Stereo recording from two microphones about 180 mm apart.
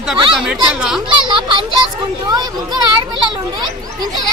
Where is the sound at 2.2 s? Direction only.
20° right (ahead or behind).